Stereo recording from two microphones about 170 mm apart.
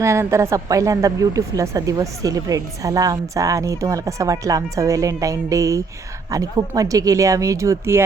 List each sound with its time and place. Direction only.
0.0 s speech: 15° right (ahead or behind)